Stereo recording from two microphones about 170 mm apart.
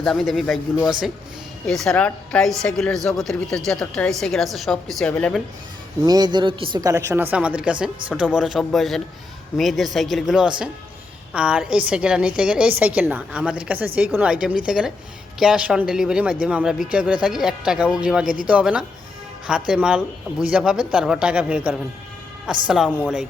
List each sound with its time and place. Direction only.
0.0 s speech: 5° left (ahead or behind)
6.1 s a woman's voice: 25° right (ahead or behind); by 22.9 s 5° right (ahead or behind)